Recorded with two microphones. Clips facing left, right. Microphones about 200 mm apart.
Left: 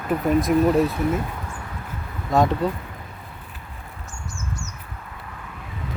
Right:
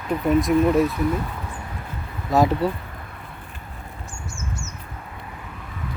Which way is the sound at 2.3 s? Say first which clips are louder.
Right 1 dB; 5° right (ahead or behind).